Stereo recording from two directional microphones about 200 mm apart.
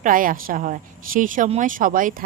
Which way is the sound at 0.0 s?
45° right (ahead or behind).